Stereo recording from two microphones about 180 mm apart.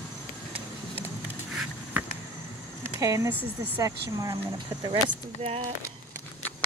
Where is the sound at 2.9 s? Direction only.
15° right (ahead or behind).